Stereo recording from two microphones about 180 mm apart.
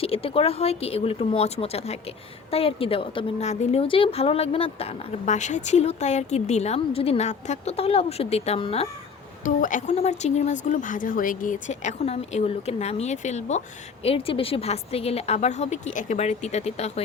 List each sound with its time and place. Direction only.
0.0 s a woman's voice: 30° left (ahead or behind)
9.4 s a woman's voice: 45° left (ahead or behind)